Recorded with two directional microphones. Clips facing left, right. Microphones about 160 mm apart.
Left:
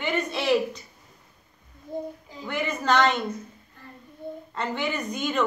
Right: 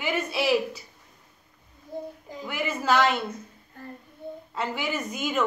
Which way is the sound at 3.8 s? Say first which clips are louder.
Right 7 dB; 50° right (ahead or behind).